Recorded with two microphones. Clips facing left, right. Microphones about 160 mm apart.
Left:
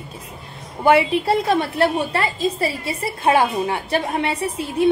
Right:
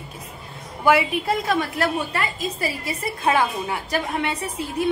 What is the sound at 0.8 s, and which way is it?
A woman's voice, 30° left (ahead or behind).